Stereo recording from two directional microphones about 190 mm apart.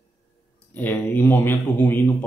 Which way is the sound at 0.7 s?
10° left (ahead or behind).